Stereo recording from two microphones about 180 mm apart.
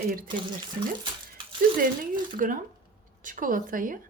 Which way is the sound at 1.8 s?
50° right (ahead or behind).